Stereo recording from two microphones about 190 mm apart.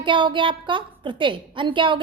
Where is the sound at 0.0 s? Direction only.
25° right (ahead or behind).